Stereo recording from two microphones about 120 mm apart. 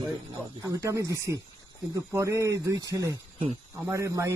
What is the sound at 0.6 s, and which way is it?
A man's voice, 25° right (ahead or behind).